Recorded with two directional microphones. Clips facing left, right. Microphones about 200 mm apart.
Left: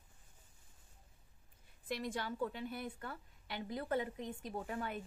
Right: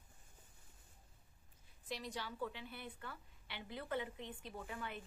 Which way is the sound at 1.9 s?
50° left (ahead or behind).